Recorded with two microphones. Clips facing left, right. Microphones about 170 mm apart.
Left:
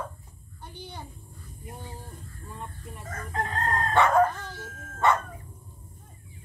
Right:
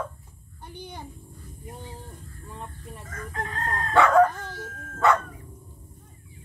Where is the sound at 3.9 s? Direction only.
70° right (ahead or behind).